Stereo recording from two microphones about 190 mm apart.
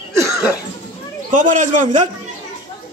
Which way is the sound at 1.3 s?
40° right (ahead or behind).